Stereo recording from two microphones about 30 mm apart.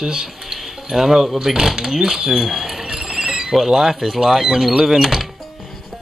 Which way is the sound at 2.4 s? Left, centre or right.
Centre.